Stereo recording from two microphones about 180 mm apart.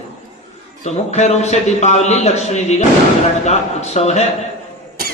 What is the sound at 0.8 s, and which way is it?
A man's voice, 40° left (ahead or behind).